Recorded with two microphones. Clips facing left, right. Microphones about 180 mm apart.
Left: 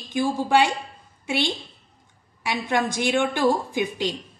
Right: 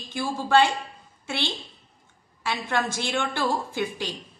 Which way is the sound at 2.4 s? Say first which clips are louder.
Left 3 dB; 15° left (ahead or behind).